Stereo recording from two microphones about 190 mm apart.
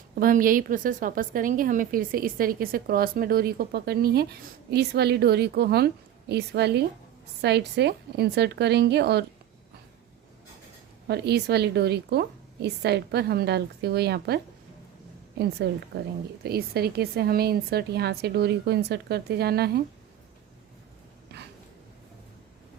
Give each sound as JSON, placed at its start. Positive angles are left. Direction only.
{"t": 0.2, "sound": "a woman's voice", "side_deg": -45}
{"t": 11.1, "sound": "a woman's voice", "side_deg": -60}